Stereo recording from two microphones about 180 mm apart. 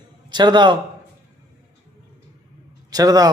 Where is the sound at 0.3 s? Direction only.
25° right (ahead or behind).